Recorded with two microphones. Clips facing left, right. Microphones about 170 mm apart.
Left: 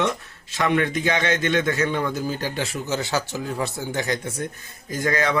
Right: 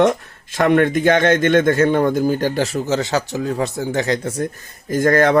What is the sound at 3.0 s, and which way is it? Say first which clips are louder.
Speech: right 5 dB; 20° right (ahead or behind).